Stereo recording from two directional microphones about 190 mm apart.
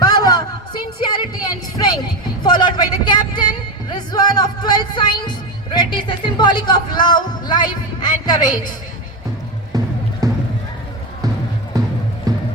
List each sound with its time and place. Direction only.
0.0 s a sound: 20° left (ahead or behind)
2.4 s music: 25° left (ahead or behind)
5.7 s speech: 25° left (ahead or behind)
9.7 s music: 20° right (ahead or behind)
11.7 s music: 20° right (ahead or behind)